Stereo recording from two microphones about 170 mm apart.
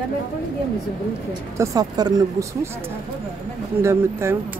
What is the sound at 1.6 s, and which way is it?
Speech, 20° right (ahead or behind).